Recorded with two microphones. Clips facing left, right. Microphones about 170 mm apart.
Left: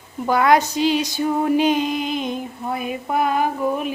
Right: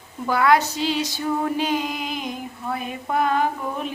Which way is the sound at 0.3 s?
20° left (ahead or behind).